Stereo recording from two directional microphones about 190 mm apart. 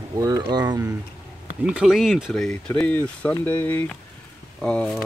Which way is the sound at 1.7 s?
Centre (ahead or behind).